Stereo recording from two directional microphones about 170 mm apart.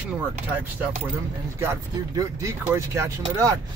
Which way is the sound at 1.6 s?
15° right (ahead or behind).